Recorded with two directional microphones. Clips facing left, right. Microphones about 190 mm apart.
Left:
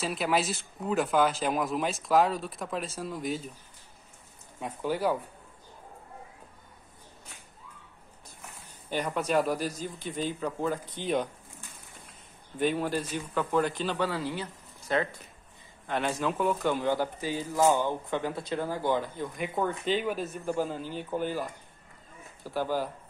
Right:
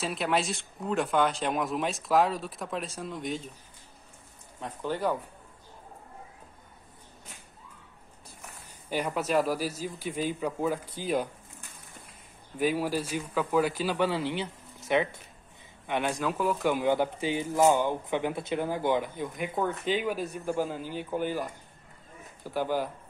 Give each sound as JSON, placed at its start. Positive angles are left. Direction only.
{"t": 0.0, "sound": "speech", "side_deg": 0}
{"t": 4.6, "sound": "speech", "side_deg": 10}
{"t": 8.9, "sound": "speech", "side_deg": -5}
{"t": 12.5, "sound": "speech", "side_deg": -5}
{"t": 13.9, "sound": "speech", "side_deg": -20}
{"t": 16.2, "sound": "speech", "side_deg": 0}